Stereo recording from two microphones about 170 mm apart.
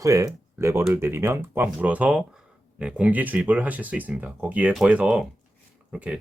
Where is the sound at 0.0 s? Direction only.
20° right (ahead or behind).